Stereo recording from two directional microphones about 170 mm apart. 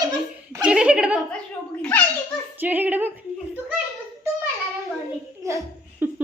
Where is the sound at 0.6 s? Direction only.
5° right (ahead or behind).